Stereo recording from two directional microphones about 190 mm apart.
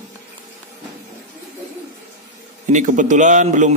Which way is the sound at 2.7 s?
40° right (ahead or behind).